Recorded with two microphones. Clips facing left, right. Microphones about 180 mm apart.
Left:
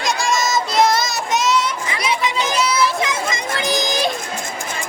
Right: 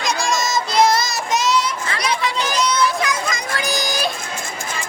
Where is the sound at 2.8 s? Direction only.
25° left (ahead or behind).